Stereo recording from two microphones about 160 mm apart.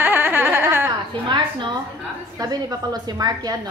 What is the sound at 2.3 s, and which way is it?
A woman's voice, 25° right (ahead or behind).